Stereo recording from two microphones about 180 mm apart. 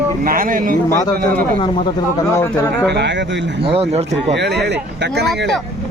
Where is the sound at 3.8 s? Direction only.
35° right (ahead or behind).